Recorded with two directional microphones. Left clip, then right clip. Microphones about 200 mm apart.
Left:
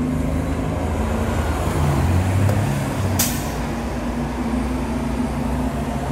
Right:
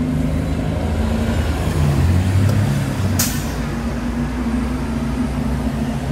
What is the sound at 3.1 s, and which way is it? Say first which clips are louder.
Vehicle: right 1 dB; 50° left (ahead or behind).